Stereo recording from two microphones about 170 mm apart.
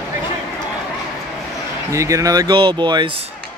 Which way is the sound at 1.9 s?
20° right (ahead or behind).